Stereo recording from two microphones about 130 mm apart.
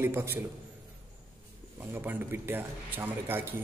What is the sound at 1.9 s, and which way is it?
Speech, 15° right (ahead or behind).